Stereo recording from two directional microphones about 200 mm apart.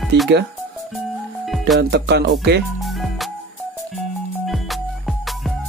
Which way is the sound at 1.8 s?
55° right (ahead or behind).